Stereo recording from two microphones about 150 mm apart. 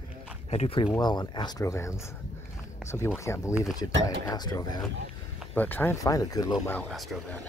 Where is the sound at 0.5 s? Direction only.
45° left (ahead or behind).